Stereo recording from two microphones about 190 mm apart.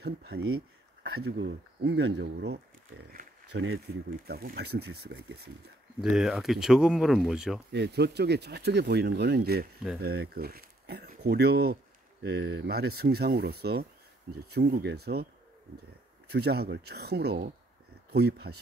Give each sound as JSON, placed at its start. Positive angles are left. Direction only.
{"t": 0.0, "sound": "speech", "side_deg": -60}
{"t": 3.1, "sound": "a sound", "side_deg": -50}
{"t": 3.9, "sound": "speech", "side_deg": -60}
{"t": 5.9, "sound": "speech", "side_deg": 0}
{"t": 7.7, "sound": "speech", "side_deg": -60}
{"t": 16.3, "sound": "speech", "side_deg": -60}